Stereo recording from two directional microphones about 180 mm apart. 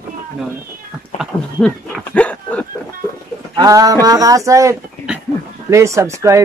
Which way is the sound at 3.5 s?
20° right (ahead or behind).